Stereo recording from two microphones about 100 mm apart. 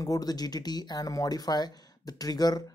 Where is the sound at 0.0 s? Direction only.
40° left (ahead or behind).